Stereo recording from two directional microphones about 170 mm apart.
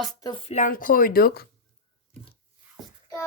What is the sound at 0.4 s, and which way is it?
Speech, 45° left (ahead or behind).